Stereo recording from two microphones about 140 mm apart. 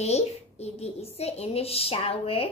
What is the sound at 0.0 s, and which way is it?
A woman's voice, 50° left (ahead or behind).